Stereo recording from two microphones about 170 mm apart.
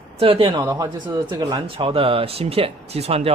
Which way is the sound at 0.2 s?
35° right (ahead or behind).